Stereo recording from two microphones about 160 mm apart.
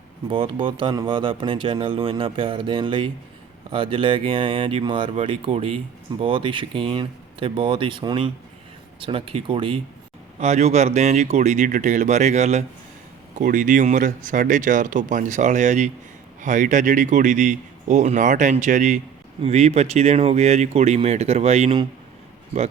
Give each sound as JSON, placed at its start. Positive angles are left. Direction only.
{"t": 0.3, "sound": "speech", "side_deg": -35}
{"t": 10.4, "sound": "speech", "side_deg": -45}